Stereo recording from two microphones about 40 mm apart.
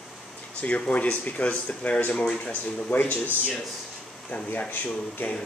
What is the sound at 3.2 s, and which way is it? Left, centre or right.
Speech, right.